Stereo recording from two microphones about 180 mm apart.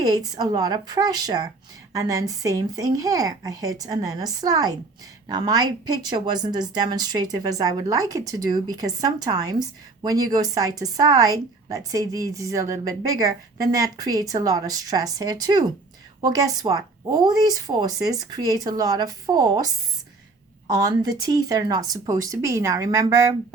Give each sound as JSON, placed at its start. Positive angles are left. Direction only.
{"t": 0.0, "sound": "a woman's voice", "side_deg": -20}
{"t": 20.8, "sound": "a woman's voice", "side_deg": -20}